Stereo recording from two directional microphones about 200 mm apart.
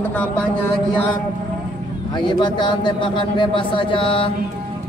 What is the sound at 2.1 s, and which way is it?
A man's voice, 20° left (ahead or behind).